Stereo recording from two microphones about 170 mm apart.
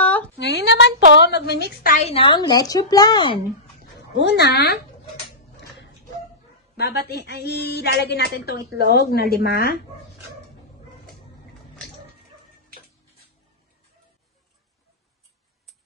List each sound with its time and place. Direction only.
0.0 s a sound: 10° left (ahead or behind)
0.4 s a sound: 90° left
1.1 s speech: 85° left; by 2.0 s 65° left (ahead or behind)
2.0 s a woman's voice: 35° left (ahead or behind)
4.2 s speech: 80° left
6.8 s speech: 70° left (ahead or behind)